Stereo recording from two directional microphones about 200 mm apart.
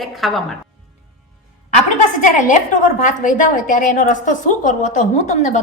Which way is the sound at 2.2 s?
40° left (ahead or behind).